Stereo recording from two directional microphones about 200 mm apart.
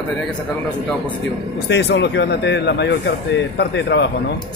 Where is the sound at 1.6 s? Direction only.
60° left (ahead or behind).